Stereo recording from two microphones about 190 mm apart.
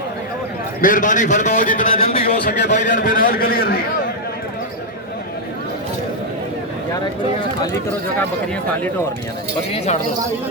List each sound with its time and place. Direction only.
0.8 s a man's voice: 45° left (ahead or behind)
9.7 s speech: 35° left (ahead or behind)